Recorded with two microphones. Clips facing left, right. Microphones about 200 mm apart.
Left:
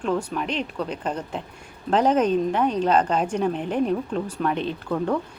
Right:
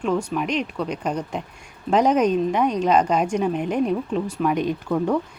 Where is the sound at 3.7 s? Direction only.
35° left (ahead or behind).